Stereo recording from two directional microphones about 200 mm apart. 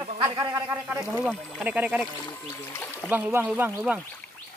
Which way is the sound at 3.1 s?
10° right (ahead or behind).